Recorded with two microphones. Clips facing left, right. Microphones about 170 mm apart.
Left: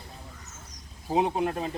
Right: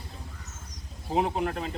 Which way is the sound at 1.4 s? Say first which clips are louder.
Left 2 dB; 20° left (ahead or behind).